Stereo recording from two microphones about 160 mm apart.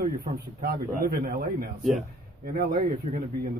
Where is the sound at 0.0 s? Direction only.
70° right (ahead or behind).